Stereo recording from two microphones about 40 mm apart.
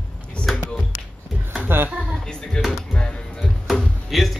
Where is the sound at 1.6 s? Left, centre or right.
Right.